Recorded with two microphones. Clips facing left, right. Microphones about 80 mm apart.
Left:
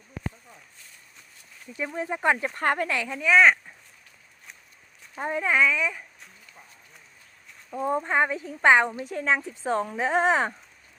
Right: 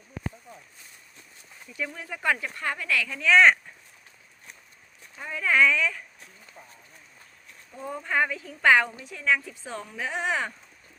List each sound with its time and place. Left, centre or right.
1.7 s speech: left
2.6 s speech: left
2.9 s speech: left
3.2 s speech: centre
5.1 s speech: left
5.5 s speech: centre
7.8 s speech: left
9.0 s speech: left